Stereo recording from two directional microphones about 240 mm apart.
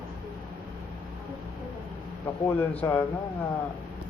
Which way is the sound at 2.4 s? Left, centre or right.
Centre.